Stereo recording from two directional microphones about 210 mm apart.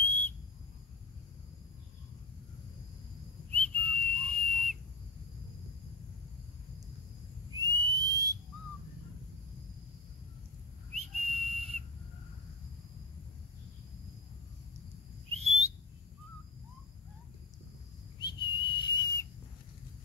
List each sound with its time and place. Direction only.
0.0 s whistle: 10° left (ahead or behind)
3.5 s whistle: 5° left (ahead or behind)
7.5 s whistling: 15° right (ahead or behind)
10.9 s whistle: 30° right (ahead or behind)
15.3 s whistling: 30° right (ahead or behind)
18.2 s whistle: 20° left (ahead or behind)